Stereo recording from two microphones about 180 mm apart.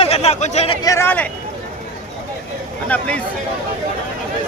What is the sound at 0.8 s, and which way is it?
Speech, 15° left (ahead or behind).